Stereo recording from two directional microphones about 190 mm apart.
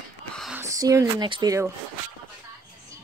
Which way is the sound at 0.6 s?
15° right (ahead or behind).